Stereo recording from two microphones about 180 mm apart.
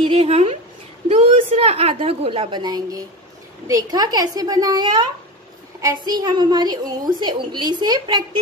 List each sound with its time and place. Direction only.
0.0 s a woman's voice: 35° right (ahead or behind)